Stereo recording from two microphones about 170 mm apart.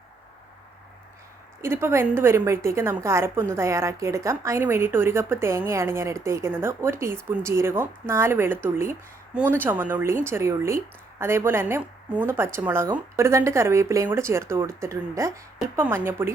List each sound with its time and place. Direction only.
1.6 s speech: 15° right (ahead or behind)